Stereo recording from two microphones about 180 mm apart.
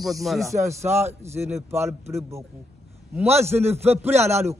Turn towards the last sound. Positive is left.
turn(degrees=-15)  # may be behind; listen again after turning